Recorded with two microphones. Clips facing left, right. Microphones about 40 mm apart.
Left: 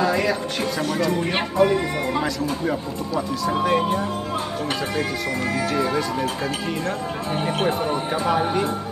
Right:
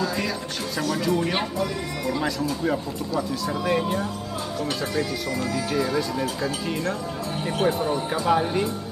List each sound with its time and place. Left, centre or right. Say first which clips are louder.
0.0 s music: left 6 dB; left
1.6 s speech: left 8 dB; left
3.2 s speech: left 5 dB; left
4.9 s speech: left 2 dB; left
7.6 s speech: right 2 dB; left
8.1 s speech: left 1 dB; centre